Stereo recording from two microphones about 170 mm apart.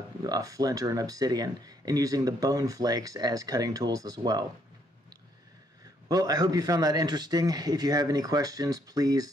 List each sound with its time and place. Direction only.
0.2 s speech: 20° right (ahead or behind)
6.0 s speech: 20° right (ahead or behind)